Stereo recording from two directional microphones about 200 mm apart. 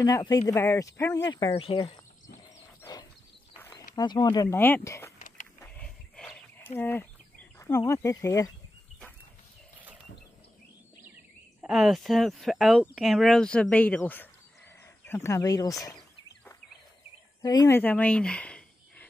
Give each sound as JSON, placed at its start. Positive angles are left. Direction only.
{"t": 0.0, "sound": "speech", "side_deg": 20}
{"t": 1.3, "sound": "speech", "side_deg": 25}
{"t": 2.8, "sound": "a sound", "side_deg": 20}
{"t": 3.9, "sound": "speech", "side_deg": 20}
{"t": 5.8, "sound": "a sound", "side_deg": 5}
{"t": 6.8, "sound": "speech", "side_deg": 10}
{"t": 11.6, "sound": "speech", "side_deg": 0}
{"t": 17.4, "sound": "speech", "side_deg": 20}